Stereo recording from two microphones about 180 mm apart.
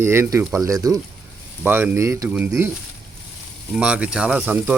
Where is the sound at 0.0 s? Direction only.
15° right (ahead or behind).